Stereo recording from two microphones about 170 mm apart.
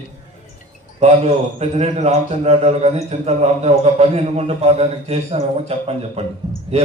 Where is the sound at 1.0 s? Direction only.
40° right (ahead or behind).